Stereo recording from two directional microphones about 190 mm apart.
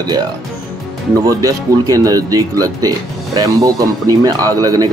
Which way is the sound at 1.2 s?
15° right (ahead or behind).